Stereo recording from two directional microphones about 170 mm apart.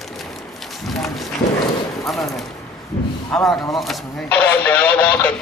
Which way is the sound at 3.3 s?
Centre (ahead or behind).